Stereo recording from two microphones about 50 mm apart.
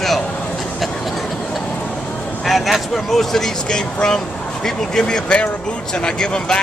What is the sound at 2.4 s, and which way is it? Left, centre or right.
Speech, centre.